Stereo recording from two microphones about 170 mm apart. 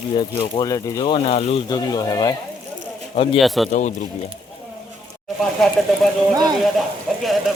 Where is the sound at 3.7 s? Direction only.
45° left (ahead or behind).